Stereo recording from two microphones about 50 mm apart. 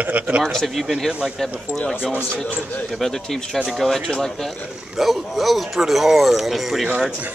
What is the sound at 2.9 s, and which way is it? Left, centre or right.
A man's voice, centre.